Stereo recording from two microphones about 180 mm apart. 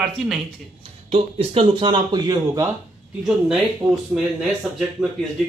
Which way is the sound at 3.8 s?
20° right (ahead or behind).